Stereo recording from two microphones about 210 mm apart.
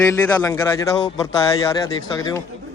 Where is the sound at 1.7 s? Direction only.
15° left (ahead or behind).